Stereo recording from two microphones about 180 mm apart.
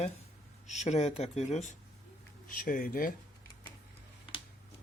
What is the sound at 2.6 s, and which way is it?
Speech, 50° left (ahead or behind).